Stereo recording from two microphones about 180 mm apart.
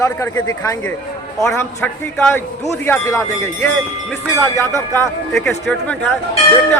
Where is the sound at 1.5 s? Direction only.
10° left (ahead or behind).